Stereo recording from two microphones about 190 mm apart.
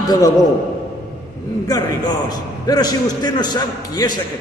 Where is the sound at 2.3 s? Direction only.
20° left (ahead or behind).